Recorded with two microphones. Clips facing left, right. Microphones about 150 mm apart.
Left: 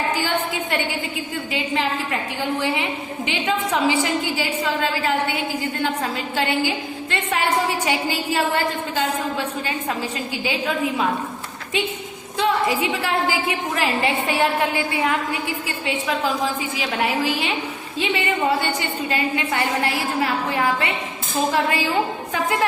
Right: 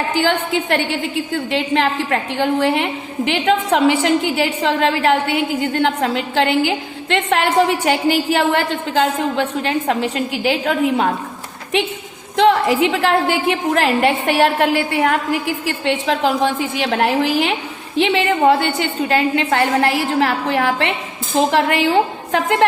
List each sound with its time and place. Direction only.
0.2 s a woman's voice: 85° right
12.4 s a woman's voice: 90° right; by 17.5 s 75° right (ahead or behind)
17.9 s a woman's voice: 90° right; by 22.4 s 75° right (ahead or behind)